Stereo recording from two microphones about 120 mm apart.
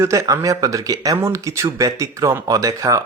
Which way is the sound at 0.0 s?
25° right (ahead or behind).